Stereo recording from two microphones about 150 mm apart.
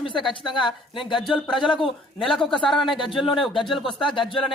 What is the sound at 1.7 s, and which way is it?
Speech, 35° left (ahead or behind).